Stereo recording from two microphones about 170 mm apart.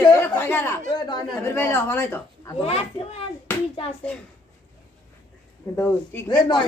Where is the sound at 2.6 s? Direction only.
35° left (ahead or behind).